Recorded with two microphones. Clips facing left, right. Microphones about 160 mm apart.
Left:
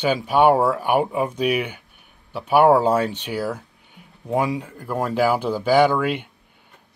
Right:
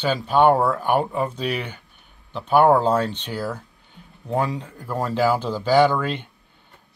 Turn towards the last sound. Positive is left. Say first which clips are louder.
# left 1 dB
turn(degrees=10)  # may be behind; listen again after turning